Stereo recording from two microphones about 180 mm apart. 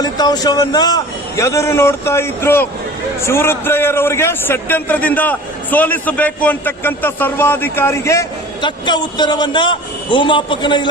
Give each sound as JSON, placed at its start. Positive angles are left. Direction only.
{"t": 0.0, "sound": "a man's voice", "side_deg": 20}